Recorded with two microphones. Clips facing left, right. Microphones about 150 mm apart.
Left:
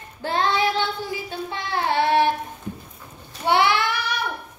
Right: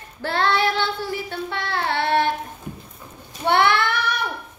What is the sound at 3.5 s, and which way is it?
Speech, 55° right (ahead or behind).